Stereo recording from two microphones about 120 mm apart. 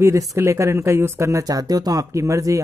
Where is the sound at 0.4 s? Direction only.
25° right (ahead or behind).